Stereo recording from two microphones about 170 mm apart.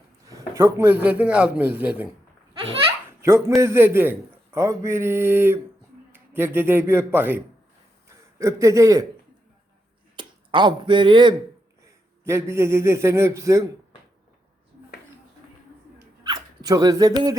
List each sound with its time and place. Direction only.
0.3 s a man's voice: 20° right (ahead or behind)
3.2 s a man's voice: 15° right (ahead or behind)
10.2 s speech: 30° right (ahead or behind)
11.9 s a man's voice: 15° right (ahead or behind)
16.2 s zipper: 25° right (ahead or behind)